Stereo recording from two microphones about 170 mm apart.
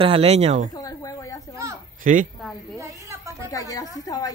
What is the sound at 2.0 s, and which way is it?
Speech, 50° right (ahead or behind).